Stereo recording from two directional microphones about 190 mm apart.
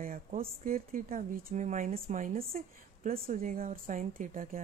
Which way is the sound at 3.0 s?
50° right (ahead or behind).